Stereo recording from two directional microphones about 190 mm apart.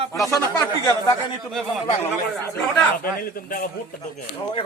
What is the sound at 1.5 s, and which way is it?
Speech, centre (ahead or behind).